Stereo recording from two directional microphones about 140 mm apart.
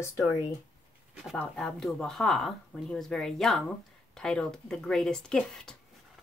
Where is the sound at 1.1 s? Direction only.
Centre (ahead or behind).